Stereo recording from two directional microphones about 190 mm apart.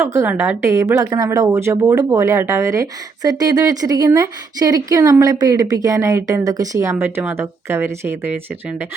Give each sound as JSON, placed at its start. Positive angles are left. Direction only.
{"t": 0.0, "sound": "a woman's voice", "side_deg": -15}